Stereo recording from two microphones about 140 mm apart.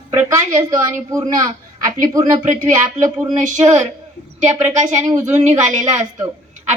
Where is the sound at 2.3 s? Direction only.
55° right (ahead or behind).